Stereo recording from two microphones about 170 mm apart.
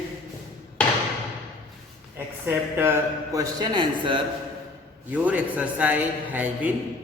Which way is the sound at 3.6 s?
30° right (ahead or behind).